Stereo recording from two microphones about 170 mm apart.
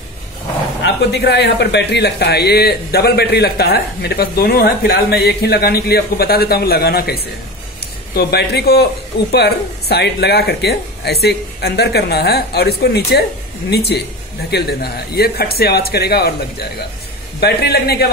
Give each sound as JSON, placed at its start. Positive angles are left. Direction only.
{"t": 0.8, "sound": "speech", "side_deg": 85}